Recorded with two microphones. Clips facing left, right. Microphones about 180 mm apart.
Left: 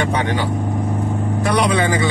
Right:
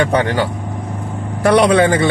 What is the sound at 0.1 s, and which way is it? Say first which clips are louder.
Speech: right 4 dB; 65° right (ahead or behind).